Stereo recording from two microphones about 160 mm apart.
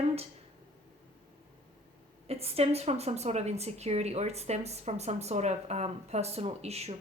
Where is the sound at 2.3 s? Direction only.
40° right (ahead or behind).